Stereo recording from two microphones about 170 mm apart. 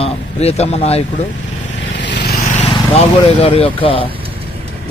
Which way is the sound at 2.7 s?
35° left (ahead or behind).